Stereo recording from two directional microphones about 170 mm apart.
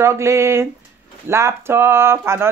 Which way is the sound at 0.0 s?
15° right (ahead or behind).